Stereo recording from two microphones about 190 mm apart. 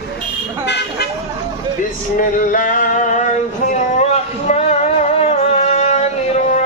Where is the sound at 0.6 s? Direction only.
60° left (ahead or behind).